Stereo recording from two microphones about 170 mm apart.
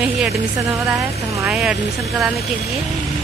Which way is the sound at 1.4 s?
Centre (ahead or behind).